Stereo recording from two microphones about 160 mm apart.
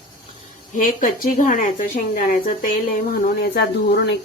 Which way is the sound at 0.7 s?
55° left (ahead or behind).